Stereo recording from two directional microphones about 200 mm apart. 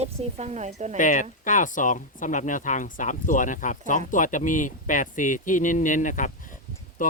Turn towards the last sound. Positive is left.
turn(degrees=40)  # may be behind; listen again after turning